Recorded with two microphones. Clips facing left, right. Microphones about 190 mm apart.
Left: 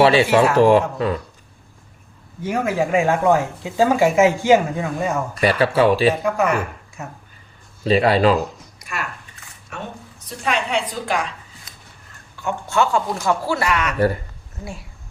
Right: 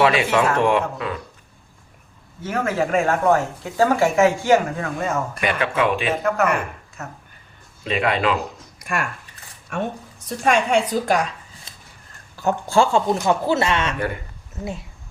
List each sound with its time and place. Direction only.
0.0 s speech: 30° left (ahead or behind)
2.4 s speech: 15° left (ahead or behind)
5.4 s speech: 35° left (ahead or behind)
7.0 s speech: 15° left (ahead or behind)
7.9 s speech: 35° left (ahead or behind)
8.8 s a sound: 55° right (ahead or behind)
10.2 s a woman's voice: 45° right (ahead or behind)
12.4 s speech: 35° right (ahead or behind)